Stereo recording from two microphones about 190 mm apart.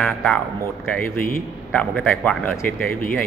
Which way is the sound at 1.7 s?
5° left (ahead or behind).